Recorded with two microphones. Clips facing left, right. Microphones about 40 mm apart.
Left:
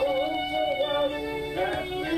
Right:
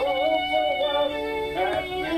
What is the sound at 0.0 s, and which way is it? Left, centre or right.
Music, centre.